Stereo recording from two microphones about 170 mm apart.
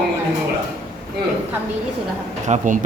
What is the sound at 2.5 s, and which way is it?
Speech, 50° right (ahead or behind).